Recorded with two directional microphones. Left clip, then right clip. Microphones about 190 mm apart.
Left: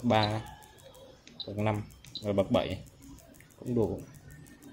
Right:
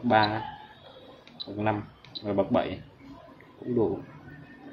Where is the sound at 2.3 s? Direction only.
45° left (ahead or behind).